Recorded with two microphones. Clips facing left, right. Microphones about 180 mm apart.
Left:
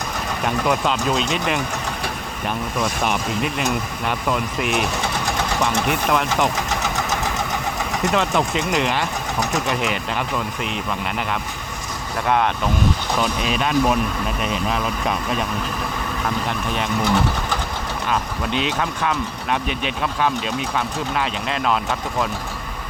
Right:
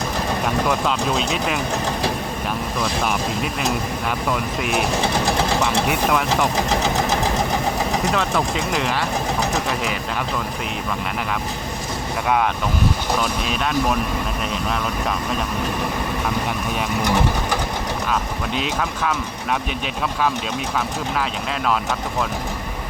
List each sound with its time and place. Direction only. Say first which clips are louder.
0.4 s speech: left 2 dB; centre (ahead or behind)
2.8 s speech: even; centre (ahead or behind)
4.9 s sewing machine: right 4 dB; 30° right (ahead or behind)
5.9 s speech: right 1 dB; centre (ahead or behind)
6.6 s speech: right 4 dB; 30° right (ahead or behind)
8.1 s speech: left 1 dB; centre (ahead or behind)
13.4 s speech: left 2 dB; centre (ahead or behind)
16.7 s speech: left 1 dB; 10° right (ahead or behind)
18.1 s speech: left 3 dB; centre (ahead or behind)